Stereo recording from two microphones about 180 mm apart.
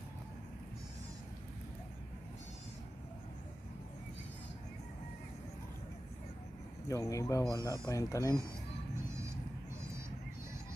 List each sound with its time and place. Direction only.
6.9 s speech: 20° left (ahead or behind)